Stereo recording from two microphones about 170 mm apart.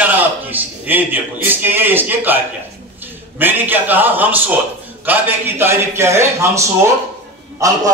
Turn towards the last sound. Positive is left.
turn(degrees=-20)  # may be behind; listen again after turning